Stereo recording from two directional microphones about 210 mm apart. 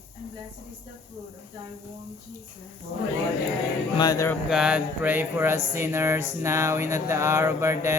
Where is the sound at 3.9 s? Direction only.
15° left (ahead or behind).